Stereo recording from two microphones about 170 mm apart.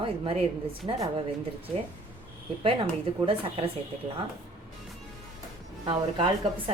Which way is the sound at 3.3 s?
35° right (ahead or behind).